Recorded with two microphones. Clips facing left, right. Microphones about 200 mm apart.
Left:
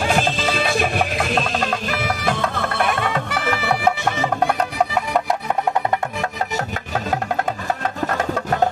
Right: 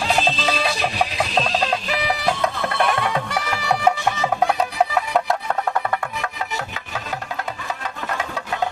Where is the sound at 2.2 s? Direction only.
50° left (ahead or behind).